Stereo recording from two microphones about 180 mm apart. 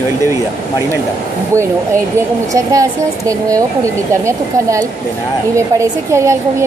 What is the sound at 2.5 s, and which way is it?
Speech, 20° right (ahead or behind).